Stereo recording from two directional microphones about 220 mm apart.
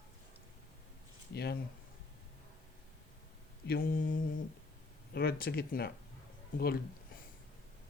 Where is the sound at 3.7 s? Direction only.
40° left (ahead or behind).